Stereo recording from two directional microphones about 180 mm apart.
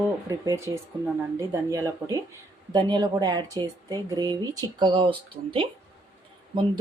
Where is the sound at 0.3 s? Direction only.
15° right (ahead or behind).